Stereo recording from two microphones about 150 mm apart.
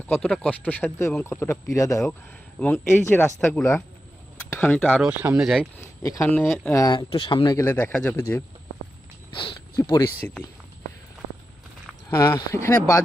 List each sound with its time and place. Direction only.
0.0 s speech: 10° left (ahead or behind)
5.0 s speech: 10° right (ahead or behind)
5.8 s speech: 20° left (ahead or behind)
6.2 s speech: 10° left (ahead or behind)
6.7 s speech: 20° left (ahead or behind)
6.9 s speech: 35° left (ahead or behind)
7.5 s speech: 15° left (ahead or behind)
9.3 s speech: 35° left (ahead or behind)
12.0 s speech: 25° left (ahead or behind)